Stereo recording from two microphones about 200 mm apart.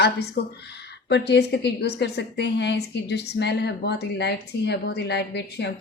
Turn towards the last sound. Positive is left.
turn(degrees=55)  # may be behind; listen again after turning